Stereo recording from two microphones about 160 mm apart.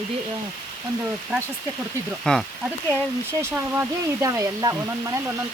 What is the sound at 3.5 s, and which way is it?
Speech, 20° right (ahead or behind).